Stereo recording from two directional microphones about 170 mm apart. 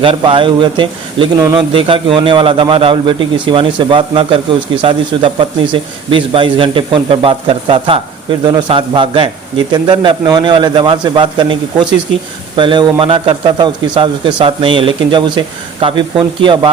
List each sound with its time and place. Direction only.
0.0 s a man's voice: 30° right (ahead or behind)